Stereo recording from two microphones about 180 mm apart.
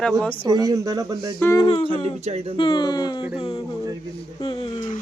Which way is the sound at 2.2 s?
35° right (ahead or behind).